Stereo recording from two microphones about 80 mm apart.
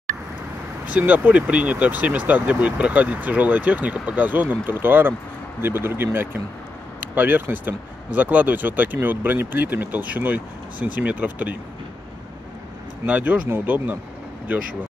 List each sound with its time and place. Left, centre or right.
0.9 s speech: right
13.0 s speech: right